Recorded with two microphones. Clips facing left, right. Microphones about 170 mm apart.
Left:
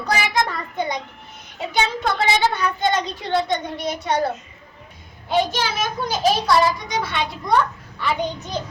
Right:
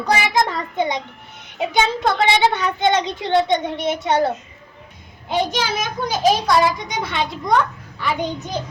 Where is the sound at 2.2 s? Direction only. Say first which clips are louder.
Right 2 dB; 20° right (ahead or behind).